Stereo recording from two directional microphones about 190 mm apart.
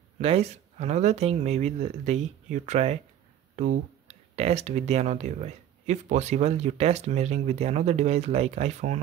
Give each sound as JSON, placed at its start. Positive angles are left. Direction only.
{"t": 0.2, "sound": "speech", "side_deg": -30}
{"t": 3.5, "sound": "a sound", "side_deg": -45}
{"t": 4.4, "sound": "speech", "side_deg": -35}